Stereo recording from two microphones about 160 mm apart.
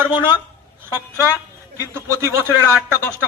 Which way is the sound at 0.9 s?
15° right (ahead or behind).